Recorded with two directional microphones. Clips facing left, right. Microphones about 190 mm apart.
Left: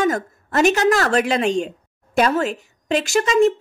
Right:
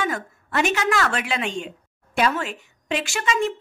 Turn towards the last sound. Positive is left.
turn(degrees=40)  # may be behind; listen again after turning